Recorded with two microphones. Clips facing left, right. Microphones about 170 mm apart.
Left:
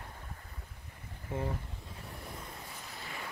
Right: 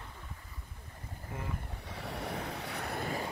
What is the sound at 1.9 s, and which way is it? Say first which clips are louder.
Waves: right 12 dB; 80° right.